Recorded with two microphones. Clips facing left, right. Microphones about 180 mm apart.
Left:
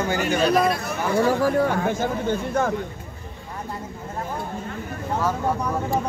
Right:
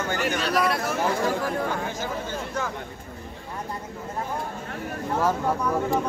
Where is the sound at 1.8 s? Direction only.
55° left (ahead or behind).